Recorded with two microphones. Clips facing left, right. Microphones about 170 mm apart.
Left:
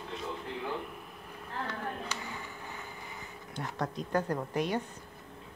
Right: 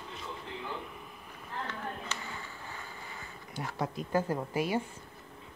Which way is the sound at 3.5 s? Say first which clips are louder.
Even; 5° right (ahead or behind).